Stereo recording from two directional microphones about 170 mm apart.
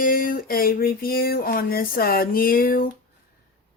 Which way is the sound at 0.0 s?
55° left (ahead or behind).